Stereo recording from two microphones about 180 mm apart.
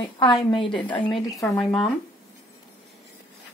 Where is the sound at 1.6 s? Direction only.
Centre (ahead or behind).